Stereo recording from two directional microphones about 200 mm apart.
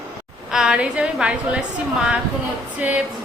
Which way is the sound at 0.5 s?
Centre (ahead or behind).